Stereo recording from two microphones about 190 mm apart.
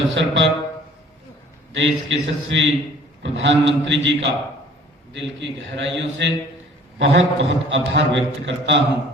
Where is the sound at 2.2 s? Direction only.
75° right (ahead or behind).